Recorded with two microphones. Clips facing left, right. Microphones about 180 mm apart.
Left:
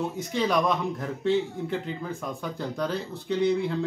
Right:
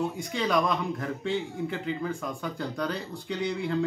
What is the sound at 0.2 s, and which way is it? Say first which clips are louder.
Speech: left 4 dB; centre (ahead or behind).